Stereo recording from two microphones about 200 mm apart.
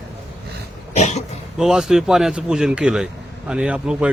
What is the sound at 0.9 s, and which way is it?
Cough, 35° left (ahead or behind).